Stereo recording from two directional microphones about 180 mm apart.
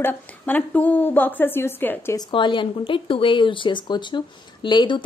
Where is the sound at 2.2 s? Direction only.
25° left (ahead or behind).